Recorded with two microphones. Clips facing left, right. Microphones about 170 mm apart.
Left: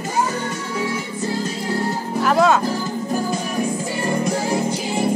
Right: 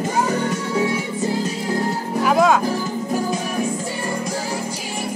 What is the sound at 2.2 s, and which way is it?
Music, 10° right (ahead or behind).